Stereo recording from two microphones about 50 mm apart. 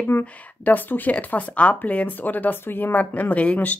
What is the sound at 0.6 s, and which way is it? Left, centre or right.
Speech, left.